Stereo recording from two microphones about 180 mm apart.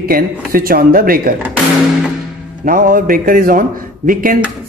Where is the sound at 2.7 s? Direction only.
50° right (ahead or behind).